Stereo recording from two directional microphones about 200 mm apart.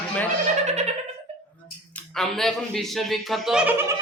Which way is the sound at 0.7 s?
35° right (ahead or behind).